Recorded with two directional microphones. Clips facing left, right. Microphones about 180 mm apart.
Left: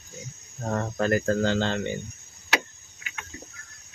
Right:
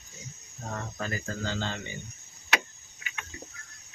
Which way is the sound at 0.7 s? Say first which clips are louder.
Left 10 dB; 55° left (ahead or behind).